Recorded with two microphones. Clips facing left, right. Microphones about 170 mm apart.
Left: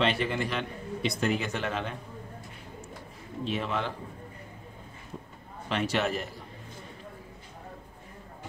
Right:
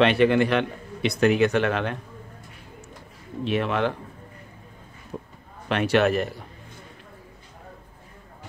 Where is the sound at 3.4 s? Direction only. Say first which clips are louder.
Right 7 dB; 65° right (ahead or behind).